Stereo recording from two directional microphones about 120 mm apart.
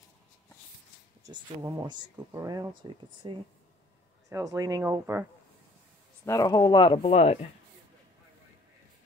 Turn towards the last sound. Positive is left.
turn(degrees=55)  # may be behind; listen again after turning